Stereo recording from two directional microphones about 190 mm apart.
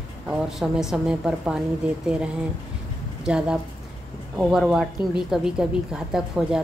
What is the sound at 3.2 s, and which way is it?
A woman's voice, 5° right (ahead or behind).